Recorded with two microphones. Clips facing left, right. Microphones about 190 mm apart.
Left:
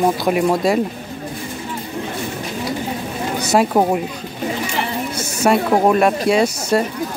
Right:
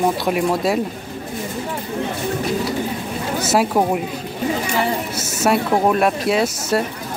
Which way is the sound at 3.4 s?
Centre (ahead or behind).